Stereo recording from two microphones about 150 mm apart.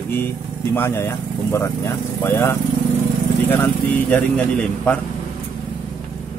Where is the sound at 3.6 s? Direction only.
10° left (ahead or behind).